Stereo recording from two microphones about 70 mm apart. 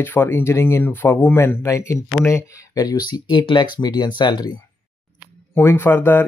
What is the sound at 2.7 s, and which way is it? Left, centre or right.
Speech, left.